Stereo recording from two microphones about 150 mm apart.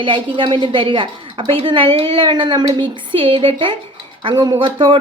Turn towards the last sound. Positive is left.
turn(degrees=-30)  # may be behind; listen again after turning